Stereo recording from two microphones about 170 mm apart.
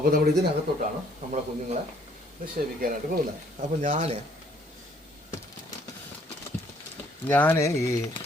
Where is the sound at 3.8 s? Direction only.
45° right (ahead or behind).